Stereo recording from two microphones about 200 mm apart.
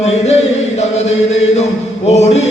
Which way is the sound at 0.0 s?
35° left (ahead or behind).